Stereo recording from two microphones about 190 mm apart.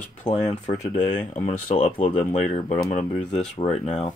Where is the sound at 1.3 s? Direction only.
40° left (ahead or behind).